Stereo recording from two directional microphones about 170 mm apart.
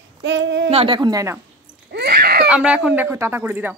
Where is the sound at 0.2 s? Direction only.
90° right.